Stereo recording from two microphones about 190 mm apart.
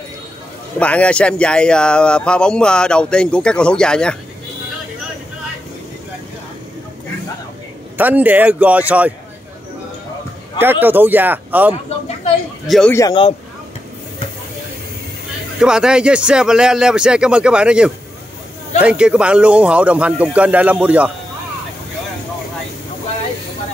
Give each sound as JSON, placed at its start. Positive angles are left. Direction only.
{"t": 0.7, "sound": "speech", "side_deg": 5}
{"t": 8.0, "sound": "a man's voice", "side_deg": -10}
{"t": 10.6, "sound": "a man's voice", "side_deg": -10}
{"t": 12.9, "sound": "a man's voice", "side_deg": 20}
{"t": 15.6, "sound": "a man's voice", "side_deg": -5}